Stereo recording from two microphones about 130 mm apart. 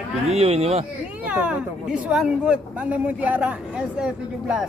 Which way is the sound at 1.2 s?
10° right (ahead or behind).